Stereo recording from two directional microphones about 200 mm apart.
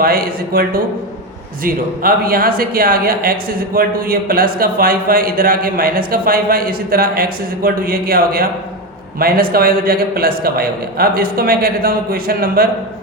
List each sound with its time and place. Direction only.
0.0 s speech: 45° right (ahead or behind)